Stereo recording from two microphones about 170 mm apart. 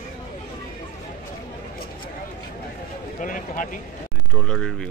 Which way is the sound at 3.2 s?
50° left (ahead or behind).